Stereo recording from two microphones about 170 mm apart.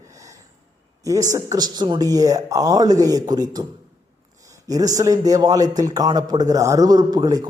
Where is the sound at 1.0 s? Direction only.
20° right (ahead or behind).